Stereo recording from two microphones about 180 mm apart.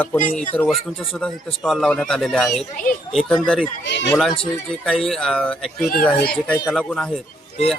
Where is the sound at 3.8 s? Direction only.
75° left (ahead or behind).